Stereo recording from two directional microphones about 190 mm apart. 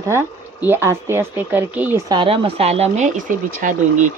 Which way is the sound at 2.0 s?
25° right (ahead or behind).